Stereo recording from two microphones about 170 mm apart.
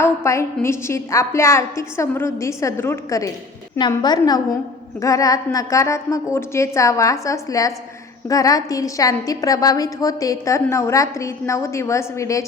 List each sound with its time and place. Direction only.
0.0 s a woman's voice: 15° left (ahead or behind)